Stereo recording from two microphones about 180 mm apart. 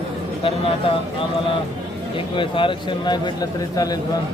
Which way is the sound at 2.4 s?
30° left (ahead or behind).